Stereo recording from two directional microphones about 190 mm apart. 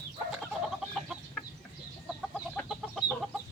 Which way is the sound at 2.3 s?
Centre (ahead or behind).